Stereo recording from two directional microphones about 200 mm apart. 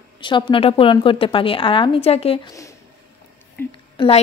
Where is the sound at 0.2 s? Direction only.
25° left (ahead or behind).